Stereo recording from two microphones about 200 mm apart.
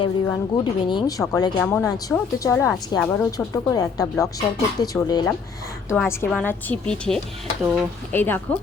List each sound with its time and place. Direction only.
0.3 s speech: 20° left (ahead or behind)
5.9 s a woman's voice: 10° left (ahead or behind)
7.6 s speech: 10° right (ahead or behind)
8.1 s speech: 10° left (ahead or behind)